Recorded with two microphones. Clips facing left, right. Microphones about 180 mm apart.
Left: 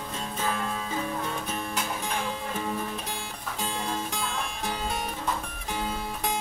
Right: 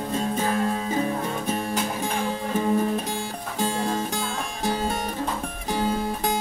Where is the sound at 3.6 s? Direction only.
40° right (ahead or behind).